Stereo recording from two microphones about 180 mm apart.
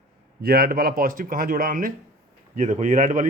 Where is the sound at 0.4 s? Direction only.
60° right (ahead or behind).